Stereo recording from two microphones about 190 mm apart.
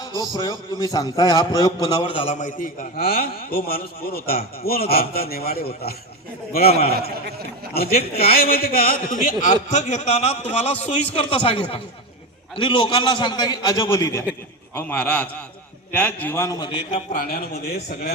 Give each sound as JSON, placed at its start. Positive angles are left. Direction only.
{"t": 0.0, "sound": "a man's voice", "side_deg": 20}
{"t": 7.7, "sound": "a man's voice", "side_deg": 55}
{"t": 16.9, "sound": "a man's voice", "side_deg": 45}